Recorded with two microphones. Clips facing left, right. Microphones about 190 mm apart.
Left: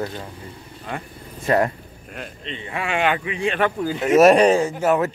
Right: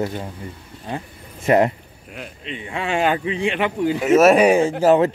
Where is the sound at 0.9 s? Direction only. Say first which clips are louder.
Right 2 dB; 25° right (ahead or behind).